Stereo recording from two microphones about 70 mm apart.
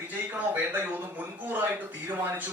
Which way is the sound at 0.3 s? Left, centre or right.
Right.